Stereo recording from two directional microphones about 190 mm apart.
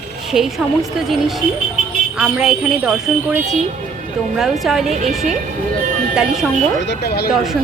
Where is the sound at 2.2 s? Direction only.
5° right (ahead or behind).